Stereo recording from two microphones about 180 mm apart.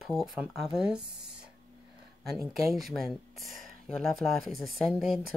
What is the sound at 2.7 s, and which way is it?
Speech, centre (ahead or behind).